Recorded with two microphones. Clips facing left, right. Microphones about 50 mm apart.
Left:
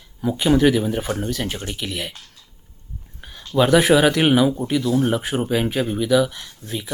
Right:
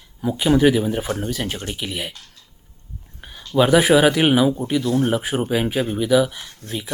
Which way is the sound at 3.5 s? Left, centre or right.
Centre.